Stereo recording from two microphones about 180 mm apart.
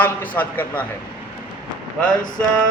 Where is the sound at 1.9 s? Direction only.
5° left (ahead or behind).